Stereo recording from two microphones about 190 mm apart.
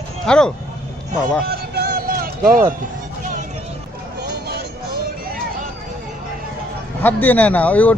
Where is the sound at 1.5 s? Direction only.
55° right (ahead or behind).